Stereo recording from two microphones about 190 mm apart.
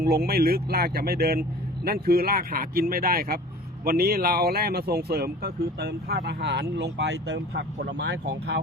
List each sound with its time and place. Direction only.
0.0 s speech: 55° right (ahead or behind)